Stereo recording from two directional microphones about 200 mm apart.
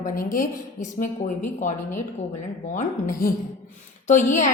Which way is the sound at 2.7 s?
45° left (ahead or behind).